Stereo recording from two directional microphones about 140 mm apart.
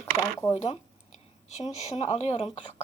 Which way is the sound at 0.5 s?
45° left (ahead or behind).